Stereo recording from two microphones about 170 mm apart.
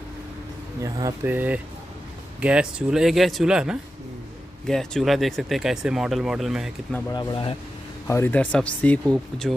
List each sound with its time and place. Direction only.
0.7 s speech: 20° right (ahead or behind); by 6.7 s 5° right (ahead or behind)
7.1 s speech: 30° left (ahead or behind)
8.1 s speech: 10° left (ahead or behind)